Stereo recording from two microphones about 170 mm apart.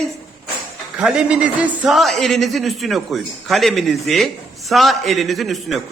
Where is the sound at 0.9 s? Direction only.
5° right (ahead or behind).